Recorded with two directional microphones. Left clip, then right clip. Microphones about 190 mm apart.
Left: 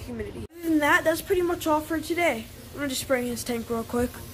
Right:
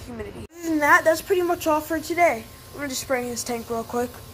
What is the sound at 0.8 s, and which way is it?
A woman's voice, 15° left (ahead or behind).